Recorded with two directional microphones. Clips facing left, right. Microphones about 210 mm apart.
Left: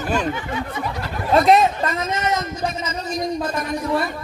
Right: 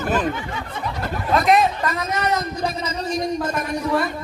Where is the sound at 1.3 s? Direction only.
35° left (ahead or behind).